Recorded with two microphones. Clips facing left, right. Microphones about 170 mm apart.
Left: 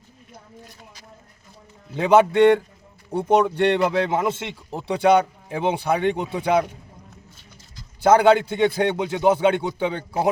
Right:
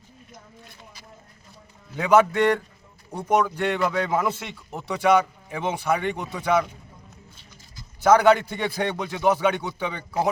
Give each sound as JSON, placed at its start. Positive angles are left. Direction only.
{"t": 2.0, "sound": "speech", "side_deg": 30}
{"t": 8.0, "sound": "speech", "side_deg": 25}